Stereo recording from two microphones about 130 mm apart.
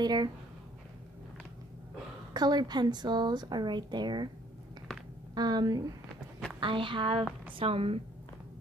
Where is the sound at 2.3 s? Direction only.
30° right (ahead or behind).